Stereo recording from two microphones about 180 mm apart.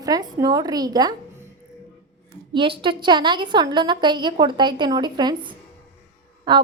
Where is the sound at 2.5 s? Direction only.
30° right (ahead or behind).